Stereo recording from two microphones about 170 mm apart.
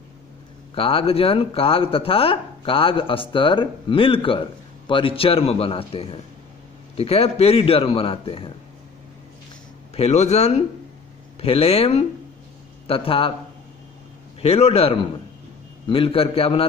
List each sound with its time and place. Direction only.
0.7 s speech: 35° left (ahead or behind)
9.9 s speech: 40° left (ahead or behind)
14.4 s speech: 35° left (ahead or behind)